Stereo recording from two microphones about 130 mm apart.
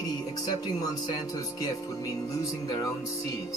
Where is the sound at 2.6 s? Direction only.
30° left (ahead or behind).